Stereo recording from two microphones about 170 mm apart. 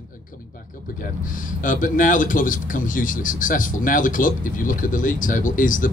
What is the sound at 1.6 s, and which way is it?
Speech, 50° left (ahead or behind).